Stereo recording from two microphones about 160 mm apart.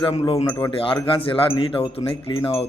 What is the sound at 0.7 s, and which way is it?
Speech, 35° left (ahead or behind).